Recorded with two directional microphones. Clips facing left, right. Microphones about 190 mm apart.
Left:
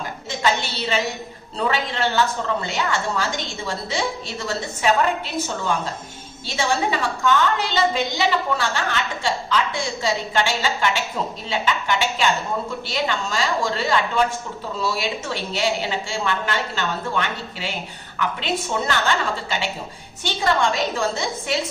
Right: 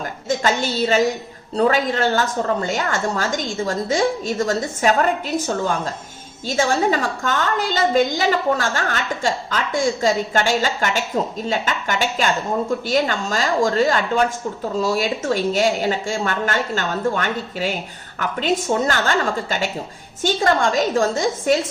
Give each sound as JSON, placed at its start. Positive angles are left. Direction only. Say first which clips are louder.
{"t": 0.3, "sound": "a woman's voice", "louder": "right 3 dB", "side_deg": -45}
{"t": 6.5, "sound": "a woman's voice", "louder": "right 4 dB", "side_deg": -45}